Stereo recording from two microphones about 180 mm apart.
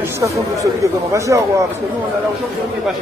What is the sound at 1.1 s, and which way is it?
Speech, 15° right (ahead or behind).